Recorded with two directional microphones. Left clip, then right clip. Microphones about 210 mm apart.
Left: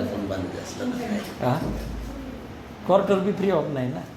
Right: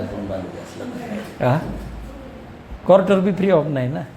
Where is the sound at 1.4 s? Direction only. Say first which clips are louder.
Right 6 dB; 45° right (ahead or behind).